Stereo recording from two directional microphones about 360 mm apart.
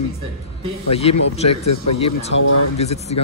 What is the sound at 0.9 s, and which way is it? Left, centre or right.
Speech, centre.